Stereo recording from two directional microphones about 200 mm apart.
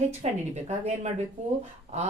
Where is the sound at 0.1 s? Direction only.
35° right (ahead or behind).